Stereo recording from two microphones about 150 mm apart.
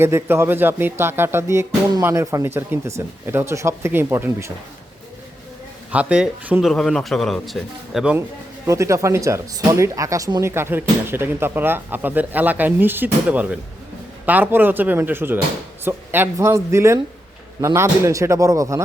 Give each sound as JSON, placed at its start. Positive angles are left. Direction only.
{"t": 0.0, "sound": "speech", "side_deg": -15}
{"t": 5.9, "sound": "a man's voice", "side_deg": -10}
{"t": 8.6, "sound": "speech", "side_deg": -20}